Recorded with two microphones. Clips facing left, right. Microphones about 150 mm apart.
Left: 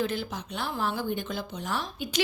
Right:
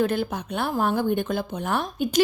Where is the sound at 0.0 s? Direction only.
55° right (ahead or behind).